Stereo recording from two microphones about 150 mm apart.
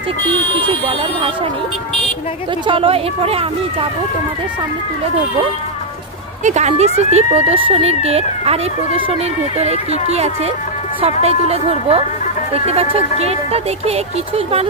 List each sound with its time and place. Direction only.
0.3 s speech: 35° right (ahead or behind)
2.6 s speech: 40° right (ahead or behind)
6.4 s speech: 50° right (ahead or behind)